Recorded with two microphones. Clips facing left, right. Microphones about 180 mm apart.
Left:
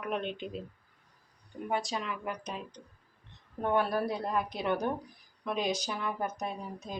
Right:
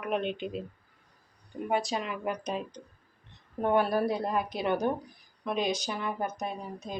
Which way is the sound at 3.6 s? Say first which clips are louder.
Right 3 dB; 5° right (ahead or behind).